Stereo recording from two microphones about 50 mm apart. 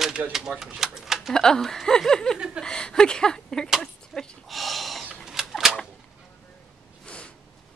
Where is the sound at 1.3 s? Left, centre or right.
Centre.